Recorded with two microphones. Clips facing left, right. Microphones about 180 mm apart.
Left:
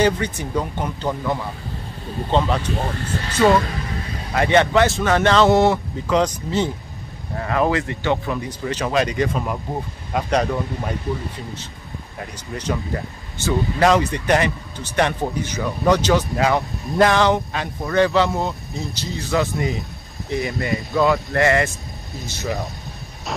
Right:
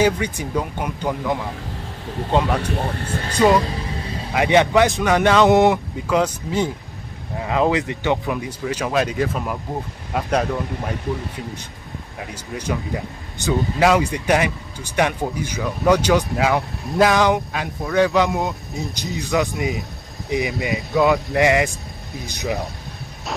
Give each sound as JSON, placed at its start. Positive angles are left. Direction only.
{"t": 0.0, "sound": "speech", "side_deg": -10}
{"t": 12.2, "sound": "speech", "side_deg": -10}